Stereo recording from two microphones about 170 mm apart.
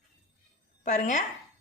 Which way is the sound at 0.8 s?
50° left (ahead or behind).